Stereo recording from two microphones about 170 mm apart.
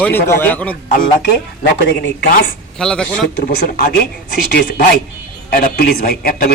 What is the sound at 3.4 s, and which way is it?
A man's voice, 65° left (ahead or behind).